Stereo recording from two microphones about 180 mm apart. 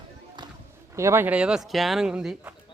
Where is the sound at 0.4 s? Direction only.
25° right (ahead or behind).